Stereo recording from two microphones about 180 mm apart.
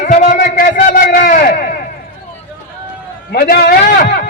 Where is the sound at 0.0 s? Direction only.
45° left (ahead or behind).